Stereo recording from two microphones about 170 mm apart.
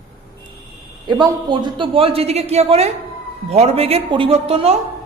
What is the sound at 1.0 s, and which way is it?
A man's voice, 25° right (ahead or behind).